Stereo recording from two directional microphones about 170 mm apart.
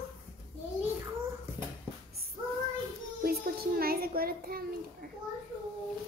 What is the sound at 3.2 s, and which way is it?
Child singing, 60° right (ahead or behind).